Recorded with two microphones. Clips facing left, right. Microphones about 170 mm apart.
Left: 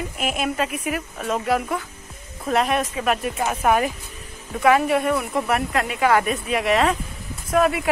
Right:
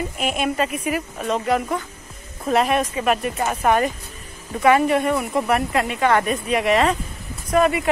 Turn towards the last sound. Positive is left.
turn(degrees=0)  # may be behind; listen again after turning